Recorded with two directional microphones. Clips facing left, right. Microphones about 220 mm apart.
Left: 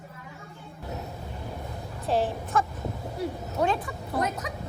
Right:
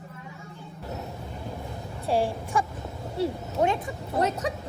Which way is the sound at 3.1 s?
25° right (ahead or behind).